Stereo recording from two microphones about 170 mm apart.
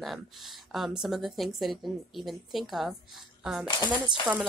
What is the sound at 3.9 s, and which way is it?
Speech, 30° right (ahead or behind).